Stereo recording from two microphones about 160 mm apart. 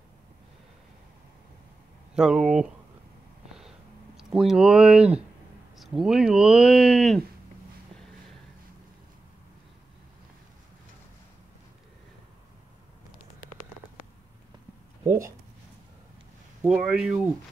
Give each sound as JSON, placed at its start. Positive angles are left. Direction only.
{"t": 2.1, "sound": "speech", "side_deg": -5}
{"t": 4.2, "sound": "speech", "side_deg": 0}
{"t": 15.0, "sound": "speech", "side_deg": -15}
{"t": 16.6, "sound": "speech", "side_deg": -5}